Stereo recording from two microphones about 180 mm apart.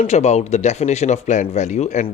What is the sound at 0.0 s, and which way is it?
Speech, 40° left (ahead or behind).